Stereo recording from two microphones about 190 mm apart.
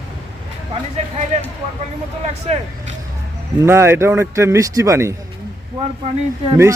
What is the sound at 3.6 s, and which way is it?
Speech, 15° right (ahead or behind).